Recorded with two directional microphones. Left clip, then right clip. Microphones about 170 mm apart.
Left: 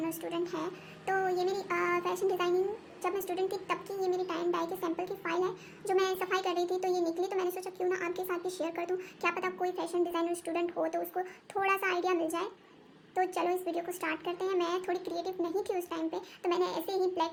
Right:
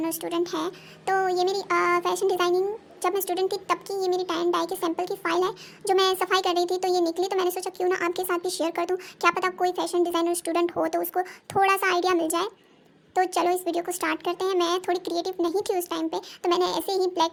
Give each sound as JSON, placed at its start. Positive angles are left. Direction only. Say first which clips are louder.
{"t": 0.0, "sound": "a child's voice", "louder": "right 7 dB", "side_deg": -40}